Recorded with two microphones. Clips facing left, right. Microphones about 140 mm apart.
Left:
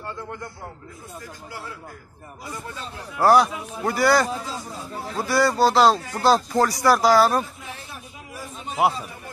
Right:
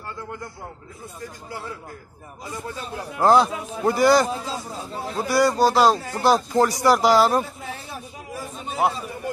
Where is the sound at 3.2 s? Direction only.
25° right (ahead or behind).